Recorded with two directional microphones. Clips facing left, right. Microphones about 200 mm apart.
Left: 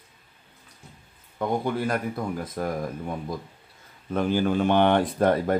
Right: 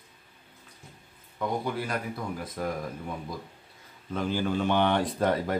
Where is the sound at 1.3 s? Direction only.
50° left (ahead or behind).